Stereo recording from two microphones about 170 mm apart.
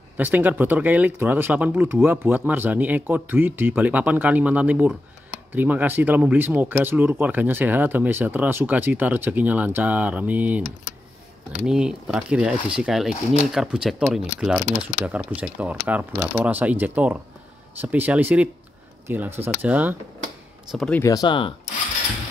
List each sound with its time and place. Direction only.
0.2 s speech: 10° right (ahead or behind)
11.6 s speech: 5° right (ahead or behind)
20.7 s speech: 5° left (ahead or behind)
21.0 s speech: 20° left (ahead or behind)